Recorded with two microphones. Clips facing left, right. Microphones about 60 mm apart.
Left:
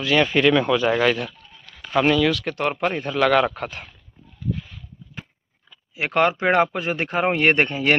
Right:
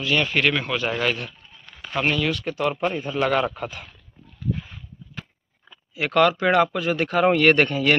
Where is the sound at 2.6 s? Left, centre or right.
Left.